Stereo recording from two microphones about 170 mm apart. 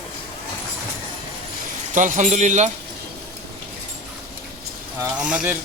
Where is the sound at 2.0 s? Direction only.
45° right (ahead or behind).